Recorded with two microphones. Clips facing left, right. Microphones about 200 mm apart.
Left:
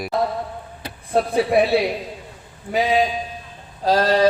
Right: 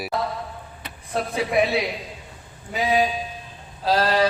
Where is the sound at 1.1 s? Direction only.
35° left (ahead or behind).